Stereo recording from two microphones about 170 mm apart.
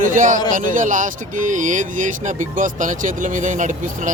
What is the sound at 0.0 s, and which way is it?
Speech, 50° right (ahead or behind).